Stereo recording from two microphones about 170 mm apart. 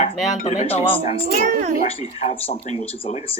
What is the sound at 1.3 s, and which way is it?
Speech, 55° right (ahead or behind).